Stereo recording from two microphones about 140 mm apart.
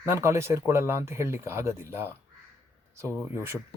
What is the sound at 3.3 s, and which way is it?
Speech, 20° right (ahead or behind).